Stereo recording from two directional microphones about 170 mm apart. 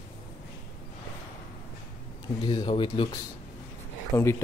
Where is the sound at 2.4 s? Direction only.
30° left (ahead or behind).